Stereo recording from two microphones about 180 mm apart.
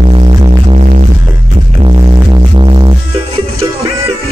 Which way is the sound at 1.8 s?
30° right (ahead or behind).